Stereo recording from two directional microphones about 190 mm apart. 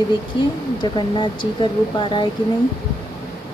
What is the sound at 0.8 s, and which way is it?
Speech, 25° left (ahead or behind).